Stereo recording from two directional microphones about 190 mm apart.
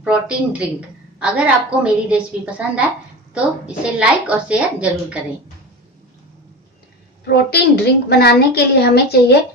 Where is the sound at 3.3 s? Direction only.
5° right (ahead or behind).